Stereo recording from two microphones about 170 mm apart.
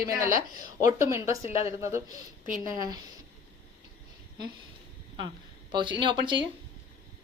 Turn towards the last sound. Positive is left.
turn(degrees=-30)  # may be behind; listen again after turning